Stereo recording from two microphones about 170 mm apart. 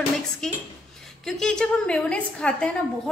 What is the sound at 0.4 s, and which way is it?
A woman's voice, 5° left (ahead or behind).